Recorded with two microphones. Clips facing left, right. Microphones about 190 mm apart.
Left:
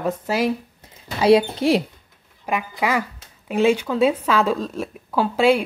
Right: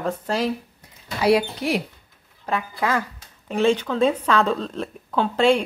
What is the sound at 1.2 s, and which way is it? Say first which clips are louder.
Speech: left 4 dB; 25° left (ahead or behind).